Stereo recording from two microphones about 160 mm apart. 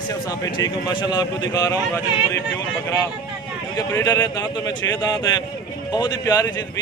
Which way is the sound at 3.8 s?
25° left (ahead or behind).